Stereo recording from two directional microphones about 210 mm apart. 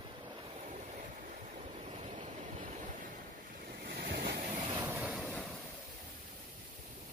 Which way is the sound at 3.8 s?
50° right (ahead or behind).